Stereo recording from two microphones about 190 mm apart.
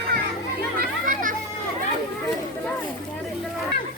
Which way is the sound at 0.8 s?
45° right (ahead or behind).